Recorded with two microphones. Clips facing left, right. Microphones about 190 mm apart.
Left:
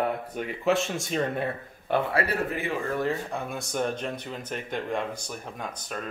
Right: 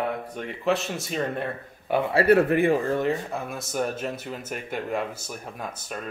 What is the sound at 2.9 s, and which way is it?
Speech, 20° right (ahead or behind).